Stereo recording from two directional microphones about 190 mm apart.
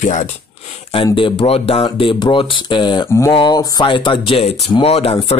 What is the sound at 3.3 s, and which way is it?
Speech, 20° left (ahead or behind).